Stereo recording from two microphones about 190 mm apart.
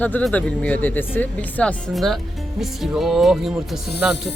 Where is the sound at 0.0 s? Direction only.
10° left (ahead or behind).